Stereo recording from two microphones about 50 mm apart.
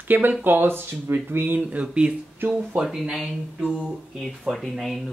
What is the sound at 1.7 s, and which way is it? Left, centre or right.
Speech, right.